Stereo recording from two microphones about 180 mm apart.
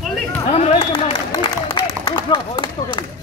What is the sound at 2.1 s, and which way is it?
Speech, 25° left (ahead or behind).